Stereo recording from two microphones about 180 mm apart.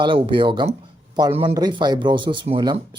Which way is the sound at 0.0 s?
30° right (ahead or behind).